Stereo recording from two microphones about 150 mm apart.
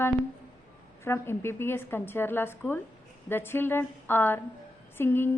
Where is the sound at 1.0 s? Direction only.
15° left (ahead or behind).